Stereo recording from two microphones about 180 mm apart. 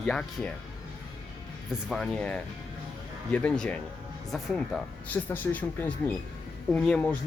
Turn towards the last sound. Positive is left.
turn(degrees=5)  # may be behind; listen again after turning